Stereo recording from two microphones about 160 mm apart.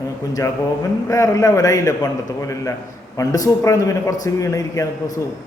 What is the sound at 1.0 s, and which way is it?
A man's voice, 20° left (ahead or behind).